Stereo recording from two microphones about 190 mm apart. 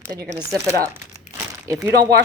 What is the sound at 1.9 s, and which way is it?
Speech, 55° right (ahead or behind).